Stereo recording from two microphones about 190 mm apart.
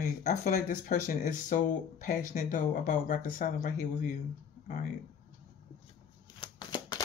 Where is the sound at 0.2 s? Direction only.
45° left (ahead or behind).